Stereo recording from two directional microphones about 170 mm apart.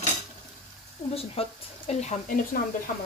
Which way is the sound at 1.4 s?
35° left (ahead or behind).